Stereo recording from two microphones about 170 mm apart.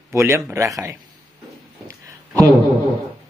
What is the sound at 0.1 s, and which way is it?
Speech, 15° right (ahead or behind).